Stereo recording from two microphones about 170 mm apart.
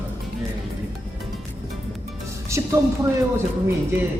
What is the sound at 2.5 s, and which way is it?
Music, 15° right (ahead or behind).